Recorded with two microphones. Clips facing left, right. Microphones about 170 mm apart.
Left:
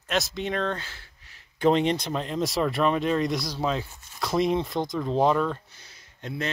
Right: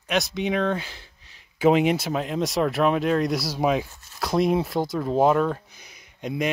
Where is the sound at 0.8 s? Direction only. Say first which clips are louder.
Right 3 dB; 15° right (ahead or behind).